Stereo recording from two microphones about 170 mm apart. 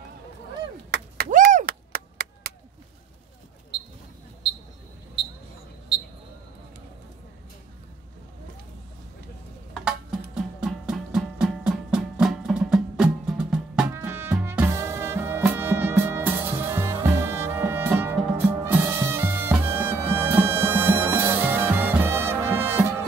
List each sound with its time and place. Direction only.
0.9 s chop: 65° right (ahead or behind)
10.3 s music: 5° right (ahead or behind)